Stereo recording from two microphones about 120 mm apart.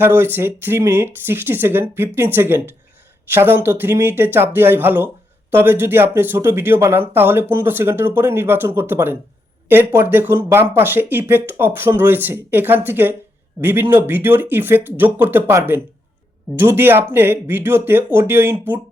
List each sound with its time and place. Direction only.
0.0 s speech: 20° right (ahead or behind)